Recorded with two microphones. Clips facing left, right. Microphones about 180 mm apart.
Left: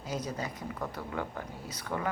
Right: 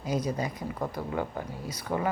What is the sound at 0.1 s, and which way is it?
Speech, 10° right (ahead or behind).